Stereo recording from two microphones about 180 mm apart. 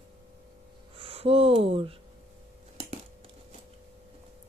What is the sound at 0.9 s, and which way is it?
Speech, 30° right (ahead or behind).